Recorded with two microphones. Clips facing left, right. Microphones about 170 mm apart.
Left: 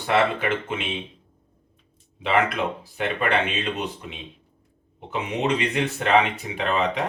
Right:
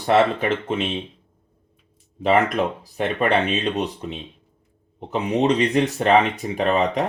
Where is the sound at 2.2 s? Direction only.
40° right (ahead or behind).